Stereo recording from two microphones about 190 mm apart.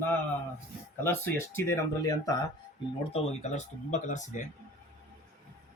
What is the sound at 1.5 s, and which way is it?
Speech, 15° left (ahead or behind).